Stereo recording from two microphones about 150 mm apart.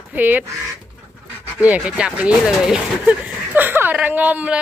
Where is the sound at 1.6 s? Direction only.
10° right (ahead or behind).